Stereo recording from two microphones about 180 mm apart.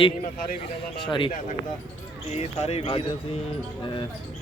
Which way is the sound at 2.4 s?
35° left (ahead or behind).